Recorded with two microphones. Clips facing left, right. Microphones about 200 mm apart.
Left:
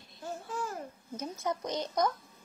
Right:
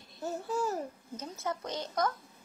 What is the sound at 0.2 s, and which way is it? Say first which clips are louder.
Babbling: right 5 dB; 40° right (ahead or behind).